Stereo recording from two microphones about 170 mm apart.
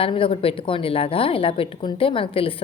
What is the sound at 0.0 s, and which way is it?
A woman's voice, 30° left (ahead or behind).